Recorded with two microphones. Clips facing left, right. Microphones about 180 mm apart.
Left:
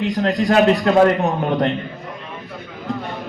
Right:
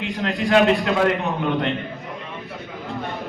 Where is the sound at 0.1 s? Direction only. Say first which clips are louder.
Even; 40° left (ahead or behind).